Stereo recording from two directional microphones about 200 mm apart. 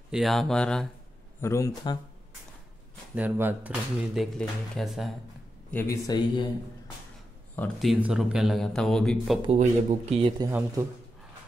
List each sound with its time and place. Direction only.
0.1 s speech: centre (ahead or behind)
1.4 s speech: 15° left (ahead or behind)
3.2 s speech: 10° right (ahead or behind)
5.7 s speech: 10° left (ahead or behind)
7.5 s speech: 5° left (ahead or behind)
9.5 s speech: 30° right (ahead or behind)
10.4 s speech: 15° right (ahead or behind)